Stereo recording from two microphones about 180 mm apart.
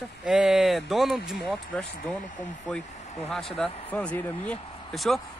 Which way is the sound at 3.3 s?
Centre (ahead or behind).